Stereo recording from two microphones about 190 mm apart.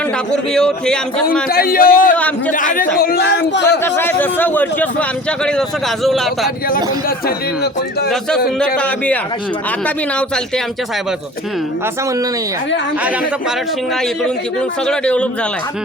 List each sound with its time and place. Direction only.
0.3 s a man's voice: 5° left (ahead or behind)
1.5 s a man's voice: 50° left (ahead or behind)
3.0 s a man's voice: 55° left (ahead or behind)
3.8 s a man's voice: 10° left (ahead or behind)
7.3 s a man's voice: 55° left (ahead or behind)
8.4 s a man's voice: 5° left (ahead or behind)
14.8 s a man's voice: 5° left (ahead or behind)